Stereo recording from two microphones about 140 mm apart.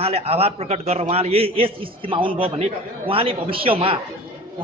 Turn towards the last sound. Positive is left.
turn(degrees=-40)  # may be behind; listen again after turning